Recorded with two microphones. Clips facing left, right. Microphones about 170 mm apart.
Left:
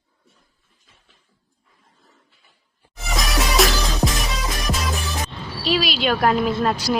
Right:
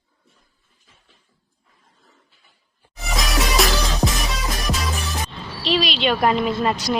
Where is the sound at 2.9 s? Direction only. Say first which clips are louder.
Even; centre (ahead or behind).